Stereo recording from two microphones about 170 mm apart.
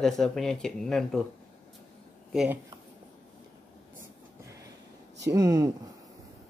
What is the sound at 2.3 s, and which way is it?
Speech, 5° right (ahead or behind).